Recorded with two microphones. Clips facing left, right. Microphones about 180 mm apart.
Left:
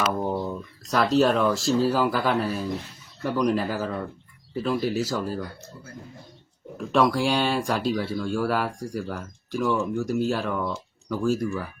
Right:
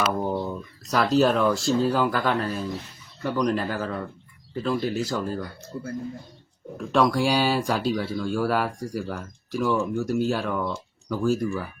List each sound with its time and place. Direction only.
0.2 s speech: centre (ahead or behind)
5.7 s speech: 60° right (ahead or behind)
6.7 s speech: centre (ahead or behind)